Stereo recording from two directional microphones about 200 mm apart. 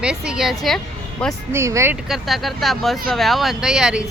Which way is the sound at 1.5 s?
15° right (ahead or behind).